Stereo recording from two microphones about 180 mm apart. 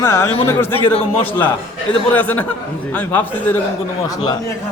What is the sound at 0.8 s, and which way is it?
Speech, 30° left (ahead or behind).